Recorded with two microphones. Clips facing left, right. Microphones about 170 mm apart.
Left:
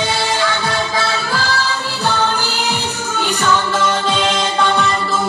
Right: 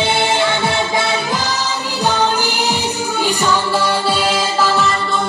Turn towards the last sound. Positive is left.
turn(degrees=-5)  # may be behind; listen again after turning